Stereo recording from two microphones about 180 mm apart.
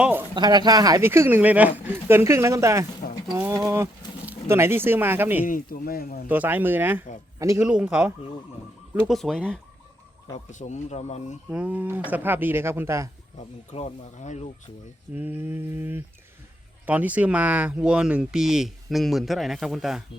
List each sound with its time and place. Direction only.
0.0 s speech: 10° right (ahead or behind)
0.3 s speech: 25° right (ahead or behind)
5.5 s speech: 50° left (ahead or behind)
6.2 s a man's voice: 10° right (ahead or behind)
7.6 s speech: 5° right (ahead or behind)
10.5 s speech: 40° left (ahead or behind)
11.4 s speech: 10° right (ahead or behind)
13.7 s speech: 40° left (ahead or behind)
15.1 s speech: 10° right (ahead or behind)